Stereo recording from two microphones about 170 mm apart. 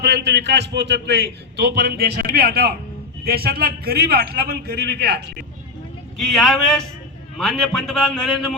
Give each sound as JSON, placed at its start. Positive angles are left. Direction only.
{"t": 0.0, "sound": "a man's voice", "side_deg": -80}
{"t": 6.1, "sound": "a man's voice", "side_deg": 0}